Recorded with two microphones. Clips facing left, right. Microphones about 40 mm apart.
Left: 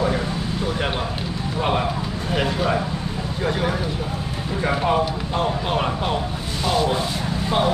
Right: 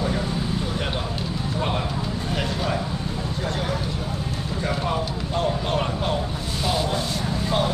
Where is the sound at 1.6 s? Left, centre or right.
Centre.